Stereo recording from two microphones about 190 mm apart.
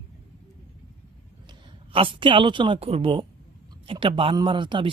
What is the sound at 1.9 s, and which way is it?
Speech, 25° right (ahead or behind).